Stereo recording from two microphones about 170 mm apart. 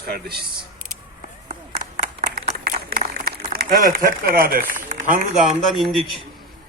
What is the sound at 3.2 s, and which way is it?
Speech, 65° right (ahead or behind).